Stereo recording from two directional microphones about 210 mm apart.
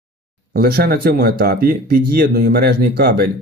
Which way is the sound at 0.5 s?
45° right (ahead or behind).